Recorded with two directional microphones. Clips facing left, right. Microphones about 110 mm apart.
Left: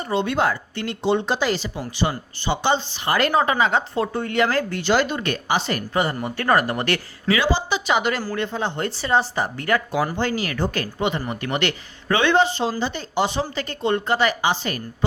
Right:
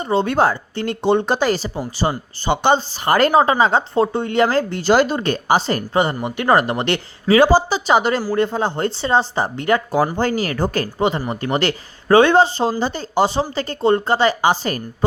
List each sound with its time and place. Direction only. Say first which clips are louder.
0.0 s a woman's voice: right 5 dB; 30° right (ahead or behind)
1.0 s speech: right 4 dB; 50° right (ahead or behind)
2.5 s speech: right 5 dB; 50° right (ahead or behind); by 7.3 s 25° right (ahead or behind)
7.3 s speech: right 10 dB; 40° right (ahead or behind); by 9.8 s 25° right (ahead or behind)
10.2 s speech: right 4 dB; 40° right (ahead or behind)